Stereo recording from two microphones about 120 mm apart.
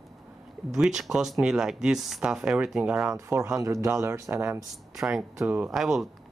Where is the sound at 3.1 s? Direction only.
25° right (ahead or behind).